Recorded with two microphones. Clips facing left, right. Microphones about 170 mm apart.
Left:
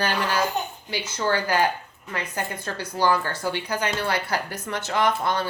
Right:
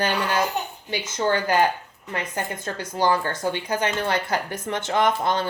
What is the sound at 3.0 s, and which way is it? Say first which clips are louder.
Speech: right 1 dB; 20° right (ahead or behind).